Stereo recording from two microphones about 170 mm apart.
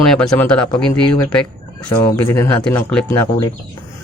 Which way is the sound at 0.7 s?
20° left (ahead or behind).